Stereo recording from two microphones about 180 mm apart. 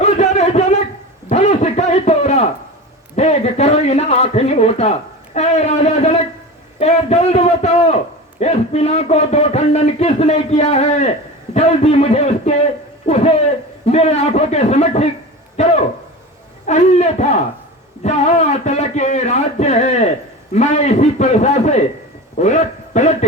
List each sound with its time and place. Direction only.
0.0 s a sound: 40° left (ahead or behind)
3.2 s speech: 35° left (ahead or behind)
13.8 s a man's voice: 35° left (ahead or behind)